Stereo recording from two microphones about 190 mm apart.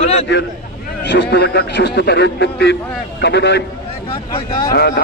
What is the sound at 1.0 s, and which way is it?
A man's voice, 65° left (ahead or behind).